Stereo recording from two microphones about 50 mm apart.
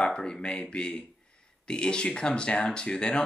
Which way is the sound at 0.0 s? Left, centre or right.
Centre.